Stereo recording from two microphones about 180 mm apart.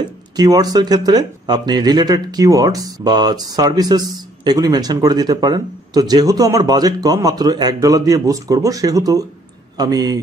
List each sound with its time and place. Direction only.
0.4 s speech: 20° right (ahead or behind)